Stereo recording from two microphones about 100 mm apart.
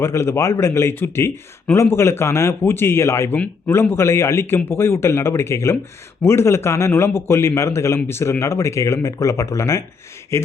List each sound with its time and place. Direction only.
0.0 s a man's voice: 25° left (ahead or behind)